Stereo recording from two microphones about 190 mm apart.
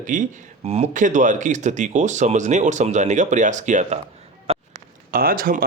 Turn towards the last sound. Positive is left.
turn(degrees=-50)  # may be behind; listen again after turning